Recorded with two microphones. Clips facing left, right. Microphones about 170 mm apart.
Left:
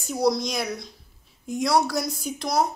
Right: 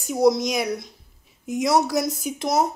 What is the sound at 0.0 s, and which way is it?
A child's voice, 20° right (ahead or behind).